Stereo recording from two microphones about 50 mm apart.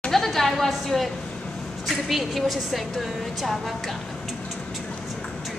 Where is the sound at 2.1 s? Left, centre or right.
Centre.